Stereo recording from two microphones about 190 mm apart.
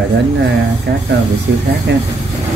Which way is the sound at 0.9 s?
60° right (ahead or behind).